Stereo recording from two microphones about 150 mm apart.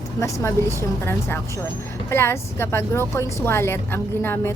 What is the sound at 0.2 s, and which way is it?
A woman's voice, 20° left (ahead or behind).